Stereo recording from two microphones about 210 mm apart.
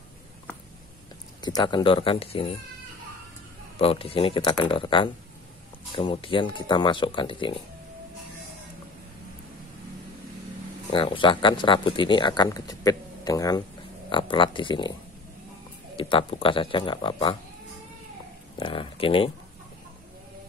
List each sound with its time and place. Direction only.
1.4 s speech: 20° left (ahead or behind)
3.7 s speech: 25° left (ahead or behind)
10.9 s speech: 25° left (ahead or behind)
16.0 s speech: 25° left (ahead or behind)
18.6 s speech: 25° left (ahead or behind)